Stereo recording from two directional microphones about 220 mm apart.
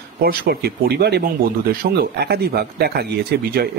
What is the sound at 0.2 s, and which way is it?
Speech, 45° right (ahead or behind).